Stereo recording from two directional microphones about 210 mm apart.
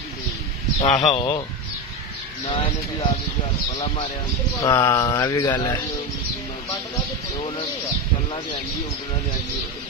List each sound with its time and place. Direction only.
0.7 s speech: 35° left (ahead or behind)
1.0 s speech: 20° left (ahead or behind)
2.4 s speech: 25° left (ahead or behind)
4.6 s mantra: 15° left (ahead or behind)